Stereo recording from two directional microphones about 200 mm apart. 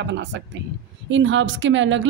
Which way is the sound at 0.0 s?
65° right (ahead or behind).